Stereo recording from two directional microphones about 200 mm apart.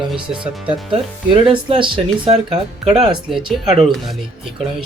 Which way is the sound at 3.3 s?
Centre (ahead or behind).